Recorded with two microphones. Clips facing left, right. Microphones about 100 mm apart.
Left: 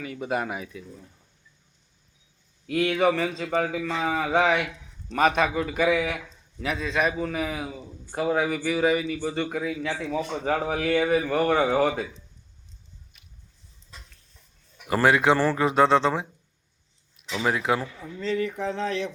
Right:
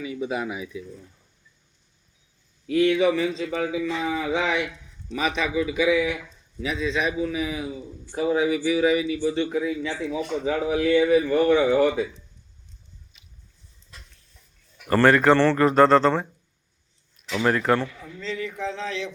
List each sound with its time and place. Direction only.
0.0 s a man's voice: 55° left (ahead or behind)
2.6 s a man's voice: 55° left (ahead or behind)
14.8 s speech: 10° left (ahead or behind)
17.2 s speech: centre (ahead or behind)
18.2 s a man's voice: 45° left (ahead or behind)